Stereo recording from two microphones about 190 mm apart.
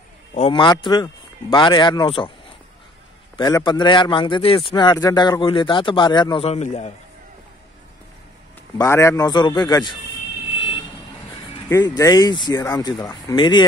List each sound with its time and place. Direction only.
0.3 s a man's voice: 25° left (ahead or behind)
3.3 s a man's voice: 20° left (ahead or behind)
8.7 s a man's voice: 15° left (ahead or behind)
10.6 s vehicle: 25° left (ahead or behind)
11.7 s a man's voice: 20° left (ahead or behind)